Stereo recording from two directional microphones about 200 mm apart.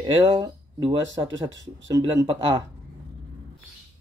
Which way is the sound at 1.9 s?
20° right (ahead or behind).